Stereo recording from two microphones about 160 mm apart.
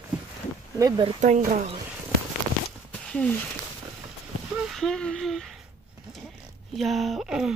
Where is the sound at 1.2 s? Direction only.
45° right (ahead or behind).